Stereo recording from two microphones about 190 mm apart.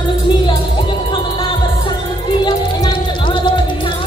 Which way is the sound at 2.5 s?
20° left (ahead or behind).